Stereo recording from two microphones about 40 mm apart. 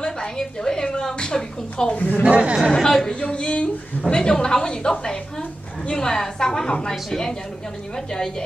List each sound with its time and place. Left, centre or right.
0.0 s a woman's voice: centre
2.0 s speech: left
2.2 s speech: right
2.7 s a woman's voice: centre
3.1 s a sound: left
4.1 s a woman's voice: centre